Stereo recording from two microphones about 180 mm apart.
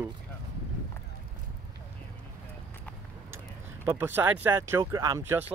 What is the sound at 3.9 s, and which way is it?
Speech, 10° right (ahead or behind).